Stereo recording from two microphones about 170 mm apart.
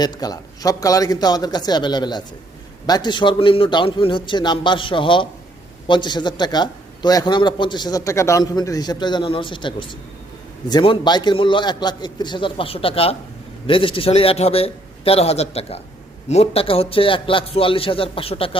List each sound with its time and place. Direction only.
0.0 s a man's voice: 25° left (ahead or behind)